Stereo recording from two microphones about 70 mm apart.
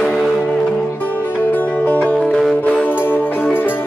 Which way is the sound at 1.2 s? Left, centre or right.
Left.